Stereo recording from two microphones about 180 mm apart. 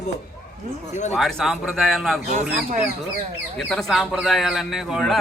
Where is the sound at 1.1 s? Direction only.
Centre (ahead or behind).